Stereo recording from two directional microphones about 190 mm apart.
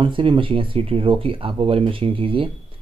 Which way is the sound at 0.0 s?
25° right (ahead or behind).